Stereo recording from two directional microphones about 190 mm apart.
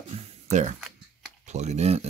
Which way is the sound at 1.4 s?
35° right (ahead or behind).